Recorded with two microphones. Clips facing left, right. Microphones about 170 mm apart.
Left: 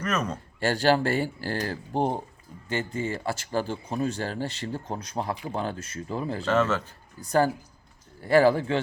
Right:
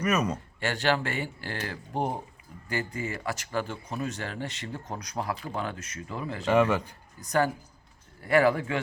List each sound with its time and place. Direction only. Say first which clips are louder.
0.0 s speech: right 2 dB; 10° right (ahead or behind)
0.6 s speech: left 5 dB; 35° left (ahead or behind)
6.4 s speech: right 2 dB; 15° right (ahead or behind)
7.2 s speech: left 3 dB; 30° left (ahead or behind)